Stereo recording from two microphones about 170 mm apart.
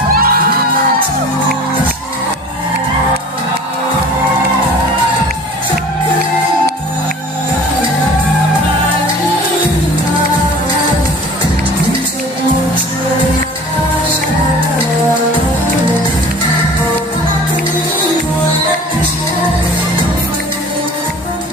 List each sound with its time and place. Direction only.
0.1 s music: 60° right (ahead or behind)